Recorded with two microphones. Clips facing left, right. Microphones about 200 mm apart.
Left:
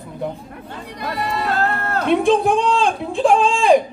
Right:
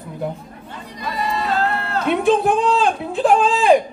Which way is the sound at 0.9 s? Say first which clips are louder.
Even; 60° left (ahead or behind).